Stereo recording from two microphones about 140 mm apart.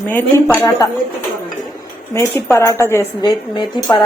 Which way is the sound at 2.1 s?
20° left (ahead or behind).